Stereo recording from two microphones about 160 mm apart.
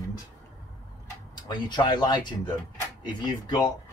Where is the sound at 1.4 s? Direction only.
25° left (ahead or behind).